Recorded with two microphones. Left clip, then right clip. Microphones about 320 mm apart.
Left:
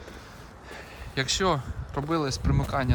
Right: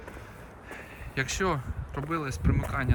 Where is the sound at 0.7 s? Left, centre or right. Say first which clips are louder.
Left 2 dB; centre.